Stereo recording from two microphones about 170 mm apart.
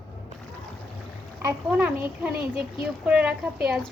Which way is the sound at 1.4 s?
20° right (ahead or behind).